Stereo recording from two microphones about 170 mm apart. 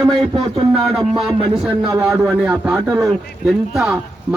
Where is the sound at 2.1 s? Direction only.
5° right (ahead or behind).